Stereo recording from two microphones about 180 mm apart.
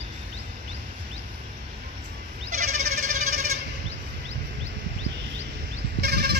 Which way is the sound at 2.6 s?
40° right (ahead or behind).